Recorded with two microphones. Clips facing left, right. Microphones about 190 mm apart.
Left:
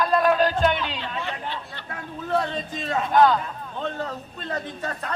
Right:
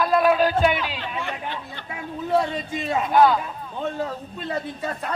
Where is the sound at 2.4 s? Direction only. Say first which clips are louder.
Right 2 dB; 10° right (ahead or behind).